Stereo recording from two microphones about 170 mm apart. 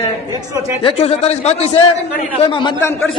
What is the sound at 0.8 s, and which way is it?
Speech, 35° left (ahead or behind).